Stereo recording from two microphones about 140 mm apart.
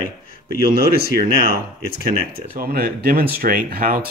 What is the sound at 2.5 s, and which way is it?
Speech, 90° right.